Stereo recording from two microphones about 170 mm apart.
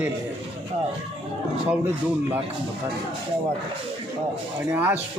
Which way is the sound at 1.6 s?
10° right (ahead or behind).